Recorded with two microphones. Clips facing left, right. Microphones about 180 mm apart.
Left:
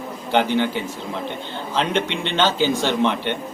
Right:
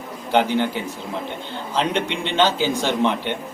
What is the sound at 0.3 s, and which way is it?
A man's voice, centre (ahead or behind).